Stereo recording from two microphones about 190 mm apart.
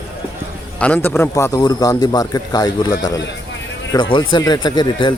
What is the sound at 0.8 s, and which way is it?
A man's voice, 5° left (ahead or behind).